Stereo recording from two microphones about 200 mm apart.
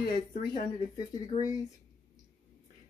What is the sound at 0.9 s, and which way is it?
Speech, 20° left (ahead or behind).